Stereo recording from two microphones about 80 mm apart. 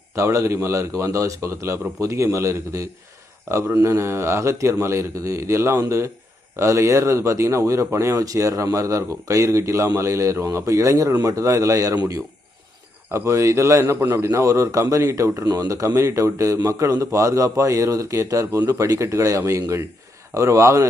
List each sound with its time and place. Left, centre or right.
0.2 s speech: right
13.1 s a man's voice: right